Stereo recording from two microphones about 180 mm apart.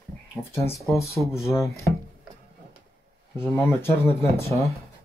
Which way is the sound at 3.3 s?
10° left (ahead or behind).